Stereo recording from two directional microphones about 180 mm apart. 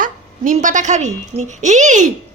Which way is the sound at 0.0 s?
45° right (ahead or behind).